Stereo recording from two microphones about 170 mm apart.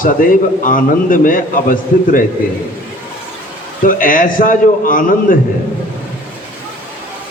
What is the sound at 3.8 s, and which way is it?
A man's voice, 55° left (ahead or behind).